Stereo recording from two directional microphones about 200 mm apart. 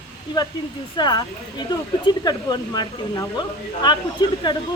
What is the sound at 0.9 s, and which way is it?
Speech, 20° left (ahead or behind).